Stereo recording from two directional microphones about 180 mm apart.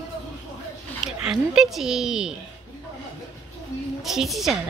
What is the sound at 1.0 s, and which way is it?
A woman's voice, 5° right (ahead or behind).